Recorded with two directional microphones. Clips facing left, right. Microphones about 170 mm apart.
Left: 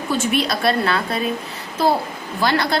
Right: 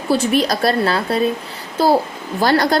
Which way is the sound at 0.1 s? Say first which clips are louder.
Right 5 dB; 35° right (ahead or behind).